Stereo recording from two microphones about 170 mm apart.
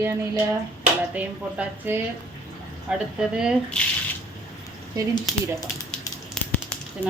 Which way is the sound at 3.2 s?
5° right (ahead or behind).